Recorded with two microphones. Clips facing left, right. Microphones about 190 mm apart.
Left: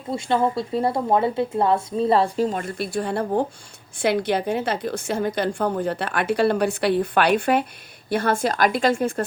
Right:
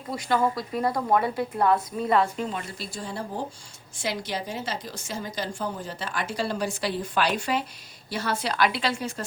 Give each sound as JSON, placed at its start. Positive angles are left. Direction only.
{"t": 0.1, "sound": "speech", "side_deg": 25}
{"t": 2.6, "sound": "a woman's voice", "side_deg": 55}